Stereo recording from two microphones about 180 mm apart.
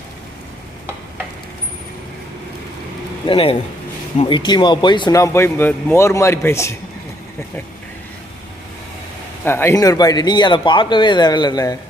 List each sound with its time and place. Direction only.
3.2 s a man's voice: 30° left (ahead or behind)
9.4 s a man's voice: 15° left (ahead or behind)